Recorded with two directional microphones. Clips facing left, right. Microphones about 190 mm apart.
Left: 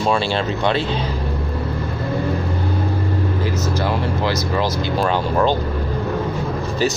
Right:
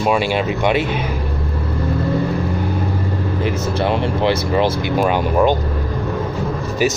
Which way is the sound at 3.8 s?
20° right (ahead or behind).